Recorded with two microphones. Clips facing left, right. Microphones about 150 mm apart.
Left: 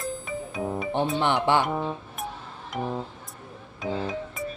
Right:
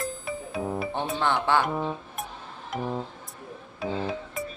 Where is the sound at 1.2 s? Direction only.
20° left (ahead or behind).